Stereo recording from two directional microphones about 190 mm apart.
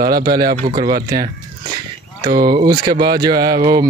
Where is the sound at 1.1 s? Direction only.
20° right (ahead or behind).